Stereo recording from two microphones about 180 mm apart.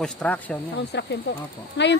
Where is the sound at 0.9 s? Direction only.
70° left (ahead or behind).